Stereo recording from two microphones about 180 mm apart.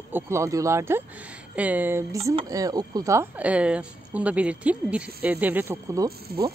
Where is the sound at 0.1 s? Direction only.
15° right (ahead or behind).